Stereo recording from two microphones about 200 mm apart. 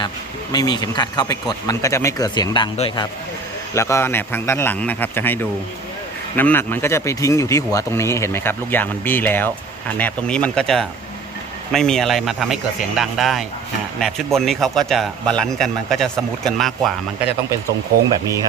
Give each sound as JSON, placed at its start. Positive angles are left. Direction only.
{"t": 0.5, "sound": "speech", "side_deg": 20}
{"t": 3.8, "sound": "a man's voice", "side_deg": 15}